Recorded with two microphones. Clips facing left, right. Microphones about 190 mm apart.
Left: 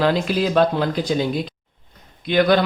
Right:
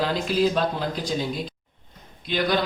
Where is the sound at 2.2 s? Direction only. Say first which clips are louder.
Left 8 dB; 60° left (ahead or behind).